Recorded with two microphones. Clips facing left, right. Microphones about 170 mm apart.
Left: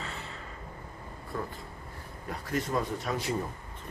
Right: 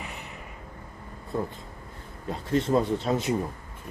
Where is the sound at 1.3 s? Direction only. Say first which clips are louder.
Right 6 dB; 25° right (ahead or behind).